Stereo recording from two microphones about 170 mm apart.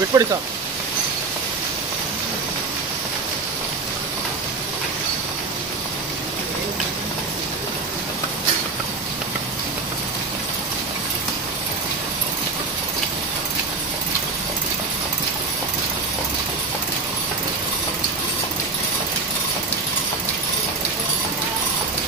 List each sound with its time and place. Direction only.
0.1 s speech: 20° right (ahead or behind)